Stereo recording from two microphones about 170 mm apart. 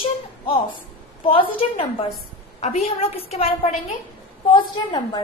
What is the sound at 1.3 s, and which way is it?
Speech, 30° left (ahead or behind).